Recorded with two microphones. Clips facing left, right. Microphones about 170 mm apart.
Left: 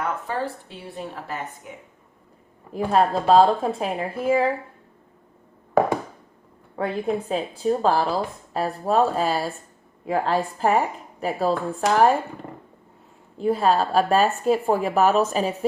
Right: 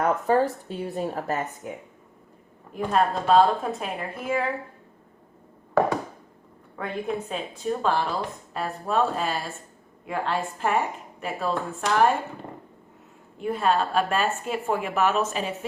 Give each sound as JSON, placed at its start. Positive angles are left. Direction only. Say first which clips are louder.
{"t": 0.0, "sound": "speech", "louder": "right 6 dB", "side_deg": -45}
{"t": 2.9, "sound": "speech", "louder": "left 3 dB", "side_deg": 35}
{"t": 6.7, "sound": "speech", "louder": "left 5 dB", "side_deg": 35}
{"t": 13.3, "sound": "speech", "louder": "left 4 dB", "side_deg": 35}